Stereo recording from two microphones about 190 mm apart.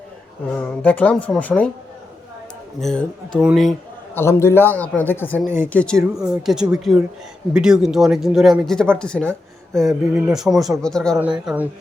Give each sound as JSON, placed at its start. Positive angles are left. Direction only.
{"t": 0.5, "sound": "a man's voice", "side_deg": 5}
{"t": 2.8, "sound": "speech", "side_deg": 5}
{"t": 4.1, "sound": "a man's voice", "side_deg": 15}